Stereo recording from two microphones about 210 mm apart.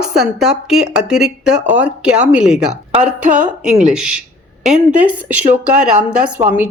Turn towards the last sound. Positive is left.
turn(degrees=-10)  # may be behind; listen again after turning